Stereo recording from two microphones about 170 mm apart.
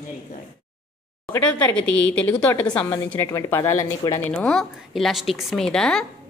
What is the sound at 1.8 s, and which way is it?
Speech, 90° left.